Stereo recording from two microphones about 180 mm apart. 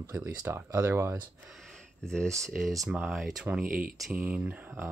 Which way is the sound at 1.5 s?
Centre (ahead or behind).